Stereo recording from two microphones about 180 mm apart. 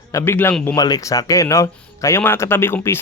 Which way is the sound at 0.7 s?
20° left (ahead or behind).